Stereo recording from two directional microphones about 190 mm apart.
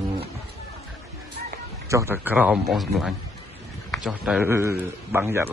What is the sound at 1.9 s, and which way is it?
A man's voice, 15° right (ahead or behind).